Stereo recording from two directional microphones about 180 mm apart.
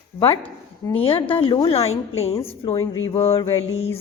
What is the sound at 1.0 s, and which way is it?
Speech, 30° left (ahead or behind).